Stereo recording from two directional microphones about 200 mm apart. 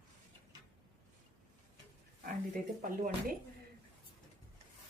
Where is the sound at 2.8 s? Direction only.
45° right (ahead or behind).